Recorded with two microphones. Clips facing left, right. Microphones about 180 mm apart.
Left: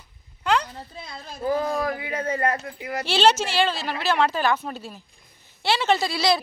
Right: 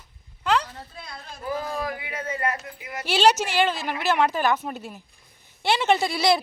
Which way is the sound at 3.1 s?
15° right (ahead or behind).